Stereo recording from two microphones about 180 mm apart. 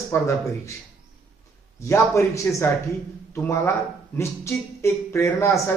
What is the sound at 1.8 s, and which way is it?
Speech, 15° left (ahead or behind).